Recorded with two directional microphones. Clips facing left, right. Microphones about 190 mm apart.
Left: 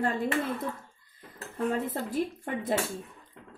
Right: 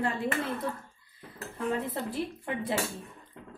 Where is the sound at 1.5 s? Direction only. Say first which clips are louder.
Left 2 dB; 45° left (ahead or behind).